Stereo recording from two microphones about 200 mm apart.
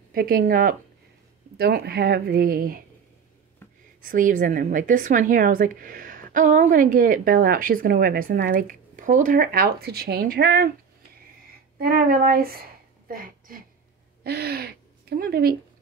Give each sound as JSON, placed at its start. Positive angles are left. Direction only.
{"t": 0.1, "sound": "a woman's voice", "side_deg": -50}
{"t": 4.1, "sound": "a woman's voice", "side_deg": -45}
{"t": 11.8, "sound": "a woman's voice", "side_deg": -45}